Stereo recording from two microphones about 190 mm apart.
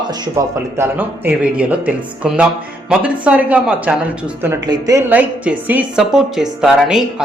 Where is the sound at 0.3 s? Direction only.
10° right (ahead or behind).